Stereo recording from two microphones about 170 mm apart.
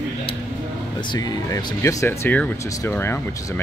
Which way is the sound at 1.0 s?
25° left (ahead or behind).